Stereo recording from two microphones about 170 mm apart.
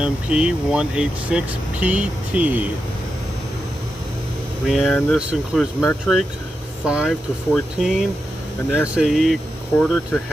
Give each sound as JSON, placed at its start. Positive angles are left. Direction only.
{"t": 0.0, "sound": "speech", "side_deg": -5}
{"t": 4.6, "sound": "speech", "side_deg": 0}